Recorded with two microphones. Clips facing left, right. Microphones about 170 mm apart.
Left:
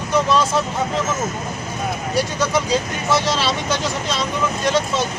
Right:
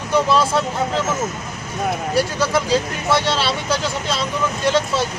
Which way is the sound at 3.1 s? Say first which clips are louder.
Even; 30° right (ahead or behind).